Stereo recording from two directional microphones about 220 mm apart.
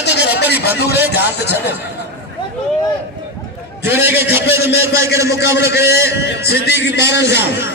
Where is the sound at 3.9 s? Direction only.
10° right (ahead or behind).